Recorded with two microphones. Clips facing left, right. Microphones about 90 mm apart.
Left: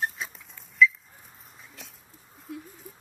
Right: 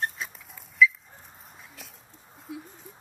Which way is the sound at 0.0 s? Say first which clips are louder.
Even; centre (ahead or behind).